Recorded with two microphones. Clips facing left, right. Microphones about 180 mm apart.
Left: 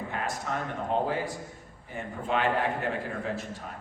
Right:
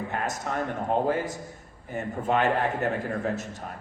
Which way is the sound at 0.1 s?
50° right (ahead or behind).